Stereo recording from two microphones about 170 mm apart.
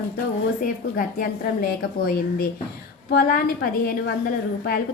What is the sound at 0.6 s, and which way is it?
A woman's voice, 55° left (ahead or behind).